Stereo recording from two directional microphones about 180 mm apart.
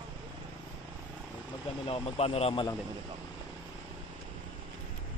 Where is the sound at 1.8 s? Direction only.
30° left (ahead or behind).